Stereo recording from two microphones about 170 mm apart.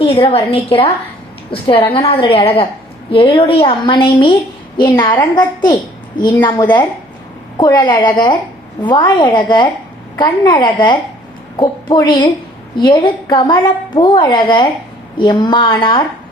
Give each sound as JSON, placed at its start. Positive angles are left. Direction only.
{"t": 0.0, "sound": "a woman's voice", "side_deg": 30}